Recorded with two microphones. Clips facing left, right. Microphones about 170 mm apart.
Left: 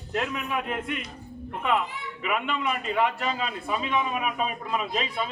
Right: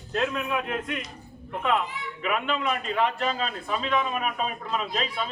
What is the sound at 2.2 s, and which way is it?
A man's voice, 5° left (ahead or behind).